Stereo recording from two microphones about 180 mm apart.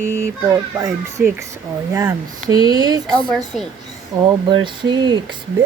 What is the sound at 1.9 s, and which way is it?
Speech, 20° right (ahead or behind).